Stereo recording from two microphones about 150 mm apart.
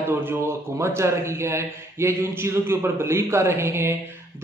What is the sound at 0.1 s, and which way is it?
A man's voice, 15° right (ahead or behind).